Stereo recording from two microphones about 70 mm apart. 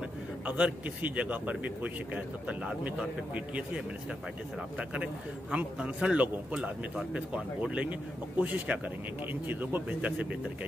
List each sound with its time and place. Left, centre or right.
0.5 s a man's voice: centre